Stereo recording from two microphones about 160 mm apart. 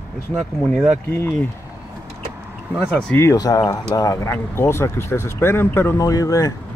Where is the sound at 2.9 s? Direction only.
10° left (ahead or behind).